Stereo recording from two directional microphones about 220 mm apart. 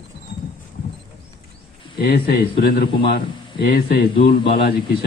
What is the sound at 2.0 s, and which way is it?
A man's voice, 45° left (ahead or behind).